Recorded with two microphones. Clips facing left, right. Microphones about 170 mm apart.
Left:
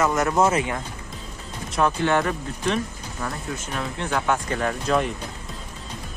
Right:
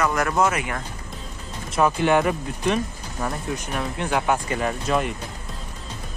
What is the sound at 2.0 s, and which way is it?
Speech, 15° right (ahead or behind).